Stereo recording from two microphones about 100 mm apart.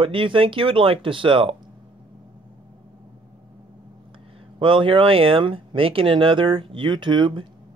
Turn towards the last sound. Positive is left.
turn(degrees=-50)  # may be behind; listen again after turning